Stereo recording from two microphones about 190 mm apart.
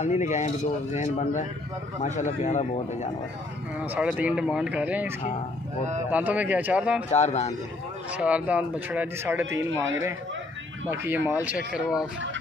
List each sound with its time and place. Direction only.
0.0 s speech: 40° left (ahead or behind)
3.8 s speech: 10° right (ahead or behind)
6.1 s speech: 10° right (ahead or behind)
7.1 s speech: 35° left (ahead or behind)
8.1 s speech: 5° right (ahead or behind)
10.9 s speech: 10° right (ahead or behind)